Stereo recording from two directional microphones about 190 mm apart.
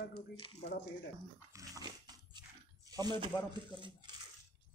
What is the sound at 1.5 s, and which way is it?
Dog, 20° right (ahead or behind).